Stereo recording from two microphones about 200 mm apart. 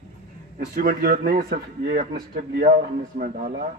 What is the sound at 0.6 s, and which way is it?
Speech, 45° right (ahead or behind).